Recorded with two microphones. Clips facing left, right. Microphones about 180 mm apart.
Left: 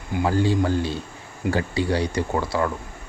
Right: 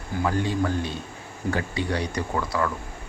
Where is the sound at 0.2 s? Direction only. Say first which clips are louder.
Left 4 dB; 30° left (ahead or behind).